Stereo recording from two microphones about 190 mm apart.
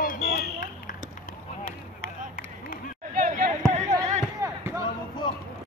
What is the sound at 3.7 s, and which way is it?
Music, 35° right (ahead or behind).